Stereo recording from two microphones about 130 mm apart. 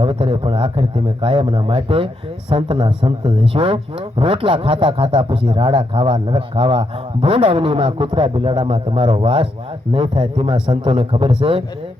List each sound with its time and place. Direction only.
0.0 s a man's voice: 40° right (ahead or behind)